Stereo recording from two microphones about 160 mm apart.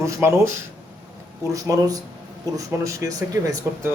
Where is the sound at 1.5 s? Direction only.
20° right (ahead or behind).